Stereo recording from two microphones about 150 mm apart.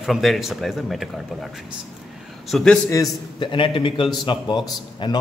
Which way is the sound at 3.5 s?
35° left (ahead or behind).